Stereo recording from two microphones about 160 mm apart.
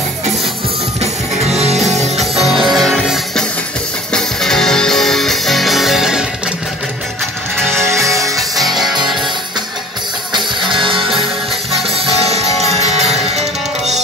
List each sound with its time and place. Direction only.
1.7 s music: centre (ahead or behind)
7.9 s music: 20° right (ahead or behind)
8.4 s music: centre (ahead or behind)
12.5 s music: centre (ahead or behind)